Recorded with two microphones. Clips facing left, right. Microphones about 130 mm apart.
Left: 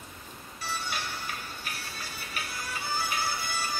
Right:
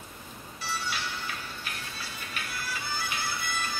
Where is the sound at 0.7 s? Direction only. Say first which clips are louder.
Right 1 dB; 45° left (ahead or behind).